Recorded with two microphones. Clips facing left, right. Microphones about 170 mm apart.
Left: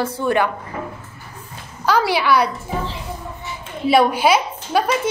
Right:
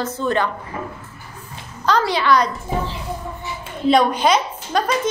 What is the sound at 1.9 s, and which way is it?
Speech, 10° left (ahead or behind).